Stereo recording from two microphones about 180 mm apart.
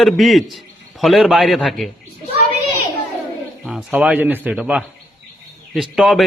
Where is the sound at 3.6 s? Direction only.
5° right (ahead or behind).